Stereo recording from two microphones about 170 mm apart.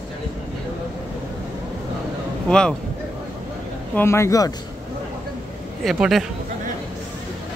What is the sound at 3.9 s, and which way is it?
Speech, 15° left (ahead or behind).